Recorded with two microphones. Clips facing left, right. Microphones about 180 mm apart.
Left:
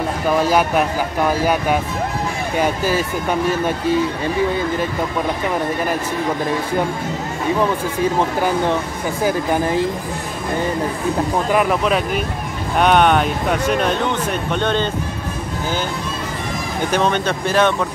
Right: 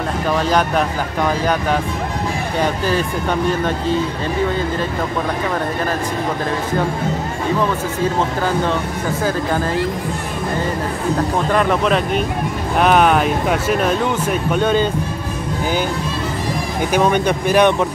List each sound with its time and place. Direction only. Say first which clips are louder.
0.4 s speech: left 1 dB; 10° left (ahead or behind)
8.2 s speech: left 1 dB; 15° left (ahead or behind)
11.5 s speech: right 1 dB; 5° left (ahead or behind)
16.9 s speech: right 3 dB; 10° right (ahead or behind)